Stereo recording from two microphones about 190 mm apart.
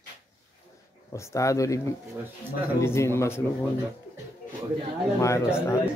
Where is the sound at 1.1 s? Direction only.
15° left (ahead or behind).